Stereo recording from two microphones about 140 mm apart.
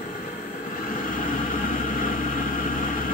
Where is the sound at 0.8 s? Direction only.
80° left.